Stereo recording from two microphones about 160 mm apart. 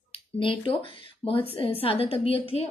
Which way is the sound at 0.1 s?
35° left (ahead or behind).